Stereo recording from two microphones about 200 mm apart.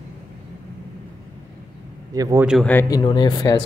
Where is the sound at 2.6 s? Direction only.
10° left (ahead or behind).